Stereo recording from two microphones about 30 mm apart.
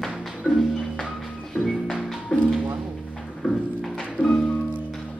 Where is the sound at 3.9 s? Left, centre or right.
Centre.